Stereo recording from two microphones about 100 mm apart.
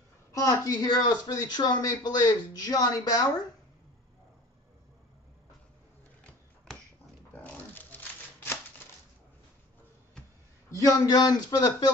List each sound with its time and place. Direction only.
0.3 s a woman's voice: 35° left (ahead or behind)
0.7 s speech: 45° left (ahead or behind)
6.7 s dog: 5° left (ahead or behind)
7.3 s crumpling: 20° left (ahead or behind)
10.8 s speech: 40° left (ahead or behind)